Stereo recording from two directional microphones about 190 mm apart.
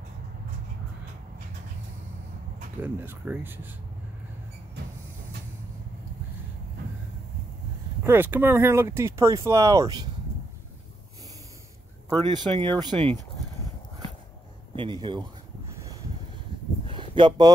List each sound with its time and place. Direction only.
2.8 s speech: 10° right (ahead or behind)
8.0 s speech: 10° right (ahead or behind)
12.2 s speech: 25° right (ahead or behind)
14.8 s speech: 25° right (ahead or behind)
16.8 s a sound: 25° right (ahead or behind)